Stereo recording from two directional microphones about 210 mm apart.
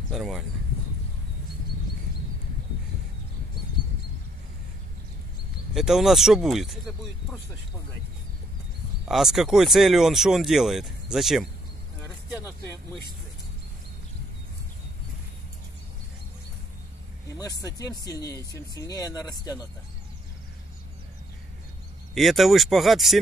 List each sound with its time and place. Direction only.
0.1 s speech: centre (ahead or behind)
5.8 s speech: centre (ahead or behind)
9.0 s speech: centre (ahead or behind)
17.4 s speech: 15° left (ahead or behind)
22.1 s speech: centre (ahead or behind)